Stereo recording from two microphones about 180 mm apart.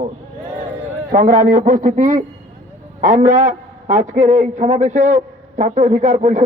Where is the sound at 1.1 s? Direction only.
55° right (ahead or behind).